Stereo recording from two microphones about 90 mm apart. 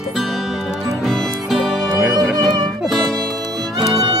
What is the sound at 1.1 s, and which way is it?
Music, centre (ahead or behind).